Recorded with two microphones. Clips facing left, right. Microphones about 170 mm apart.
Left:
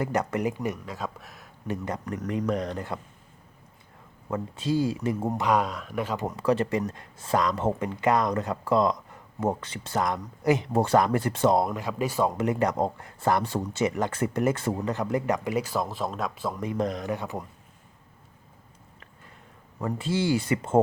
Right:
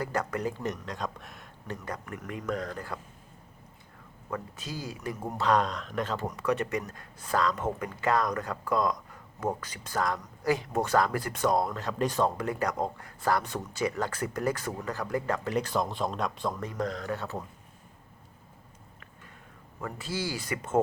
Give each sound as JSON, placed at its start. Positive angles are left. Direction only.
{"t": 0.0, "sound": "speech", "side_deg": 20}
{"t": 1.6, "sound": "speech", "side_deg": 15}
{"t": 2.0, "sound": "speech", "side_deg": 35}
{"t": 2.5, "sound": "speech", "side_deg": 20}
{"t": 4.3, "sound": "speech", "side_deg": 30}
{"t": 5.5, "sound": "speech", "side_deg": 10}
{"t": 6.2, "sound": "speech", "side_deg": 30}
{"t": 12.4, "sound": "speech", "side_deg": 25}
{"t": 15.5, "sound": "speech", "side_deg": 5}
{"t": 16.6, "sound": "speech", "side_deg": 20}
{"t": 19.8, "sound": "speech", "side_deg": 25}